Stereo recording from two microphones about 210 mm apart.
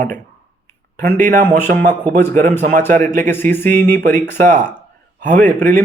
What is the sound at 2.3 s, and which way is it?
Speech, 40° right (ahead or behind).